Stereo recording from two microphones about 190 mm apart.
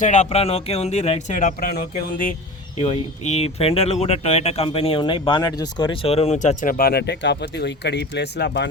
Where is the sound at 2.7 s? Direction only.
35° left (ahead or behind).